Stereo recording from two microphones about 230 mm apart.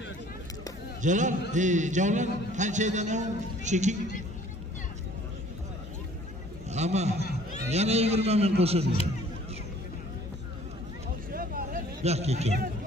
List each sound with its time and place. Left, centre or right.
1.0 s a man's voice: right
6.7 s a man's voice: right
11.3 s a sound: right